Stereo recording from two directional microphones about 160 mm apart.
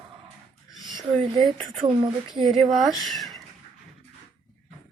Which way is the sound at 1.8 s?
30° right (ahead or behind).